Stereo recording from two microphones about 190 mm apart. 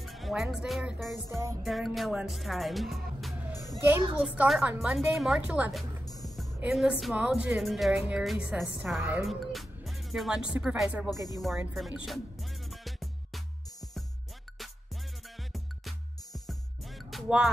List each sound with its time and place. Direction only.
0.0 s a woman's voice: centre (ahead or behind)
1.3 s music: 15° right (ahead or behind)
1.6 s a woman's voice: centre (ahead or behind)
3.6 s a sound: centre (ahead or behind)
4.2 s a woman's voice: 5° right (ahead or behind)
11.1 s speech: 20° left (ahead or behind)
11.7 s music: 5° right (ahead or behind)
16.3 s music: centre (ahead or behind)